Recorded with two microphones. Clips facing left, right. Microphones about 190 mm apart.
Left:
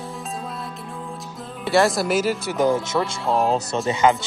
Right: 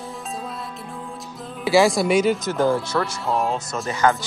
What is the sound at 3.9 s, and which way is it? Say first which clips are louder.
Speech: left 2 dB; 25° left (ahead or behind).